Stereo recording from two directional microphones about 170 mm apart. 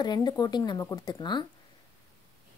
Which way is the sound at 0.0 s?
25° left (ahead or behind).